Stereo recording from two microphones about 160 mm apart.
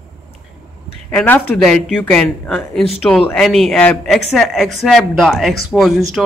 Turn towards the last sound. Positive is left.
turn(degrees=0)  # may be behind; listen again after turning